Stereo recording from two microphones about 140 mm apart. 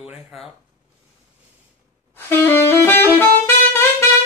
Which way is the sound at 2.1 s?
15° left (ahead or behind).